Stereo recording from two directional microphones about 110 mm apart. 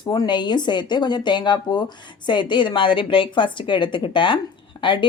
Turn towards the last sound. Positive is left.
turn(degrees=50)  # may be behind; listen again after turning